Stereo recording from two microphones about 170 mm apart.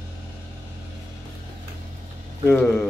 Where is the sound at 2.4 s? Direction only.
10° left (ahead or behind).